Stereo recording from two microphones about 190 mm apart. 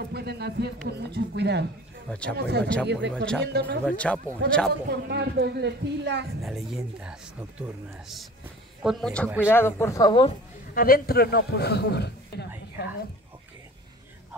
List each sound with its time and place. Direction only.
0.1 s a sound: 60° right (ahead or behind)
0.8 s speech: 60° right (ahead or behind)
2.0 s speech: 5° left (ahead or behind)
2.3 s speech: 60° right (ahead or behind)
3.8 s speech: 5° left (ahead or behind)
4.8 s speech: 60° right (ahead or behind)
6.4 s speech: centre (ahead or behind); by 10.3 s 25° left (ahead or behind)
10.7 s a man's voice: 50° left (ahead or behind)